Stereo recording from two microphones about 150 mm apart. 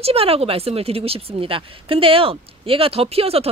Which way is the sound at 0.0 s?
40° right (ahead or behind).